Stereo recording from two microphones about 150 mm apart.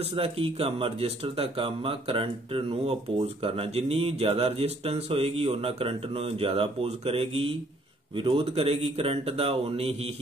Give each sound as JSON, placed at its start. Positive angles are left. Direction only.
{"t": 0.1, "sound": "speech", "side_deg": -40}